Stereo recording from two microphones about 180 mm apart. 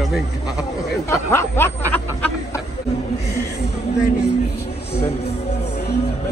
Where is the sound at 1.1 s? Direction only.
15° left (ahead or behind).